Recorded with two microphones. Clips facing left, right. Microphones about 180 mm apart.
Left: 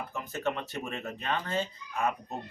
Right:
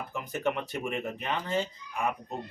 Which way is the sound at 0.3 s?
15° right (ahead or behind).